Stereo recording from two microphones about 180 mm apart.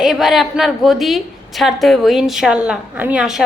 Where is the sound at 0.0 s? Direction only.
Centre (ahead or behind).